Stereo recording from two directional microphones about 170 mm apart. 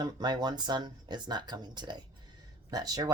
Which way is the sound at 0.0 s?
25° right (ahead or behind).